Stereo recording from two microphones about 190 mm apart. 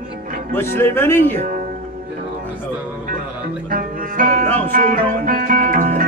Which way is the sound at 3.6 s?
45° right (ahead or behind).